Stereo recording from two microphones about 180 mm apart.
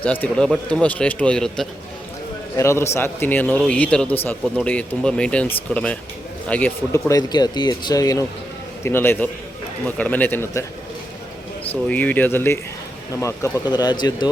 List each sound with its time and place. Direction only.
0.0 s speech: 10° left (ahead or behind)
2.6 s speech: 15° left (ahead or behind)
7.1 s speech: 20° left (ahead or behind)
11.7 s speech: 10° left (ahead or behind)